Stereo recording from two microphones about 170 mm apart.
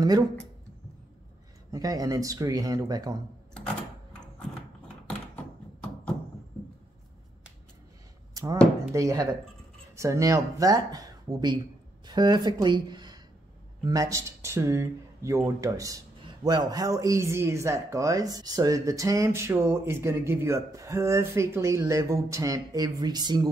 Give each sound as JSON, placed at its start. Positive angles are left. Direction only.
{"t": 1.7, "sound": "speech", "side_deg": -20}
{"t": 3.5, "sound": "a sound", "side_deg": 5}
{"t": 8.9, "sound": "speech", "side_deg": -20}